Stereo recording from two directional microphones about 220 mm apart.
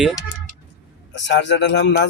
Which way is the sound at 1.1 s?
55° left (ahead or behind).